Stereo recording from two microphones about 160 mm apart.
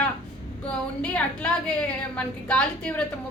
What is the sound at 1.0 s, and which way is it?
A woman's voice, 10° left (ahead or behind).